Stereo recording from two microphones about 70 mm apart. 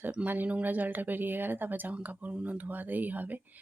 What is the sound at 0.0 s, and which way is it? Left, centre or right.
Speech, right.